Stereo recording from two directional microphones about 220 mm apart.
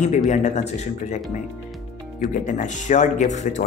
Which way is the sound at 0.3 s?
35° left (ahead or behind).